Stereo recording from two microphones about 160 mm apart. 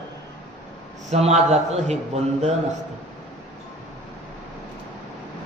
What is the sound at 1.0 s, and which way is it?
Speech, 45° right (ahead or behind).